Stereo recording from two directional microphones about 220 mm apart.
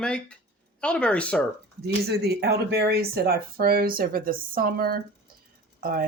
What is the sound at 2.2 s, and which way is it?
Speech, 45° right (ahead or behind).